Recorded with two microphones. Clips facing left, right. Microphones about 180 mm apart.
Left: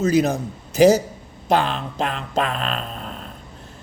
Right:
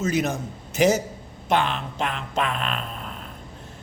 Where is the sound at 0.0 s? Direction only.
35° left (ahead or behind).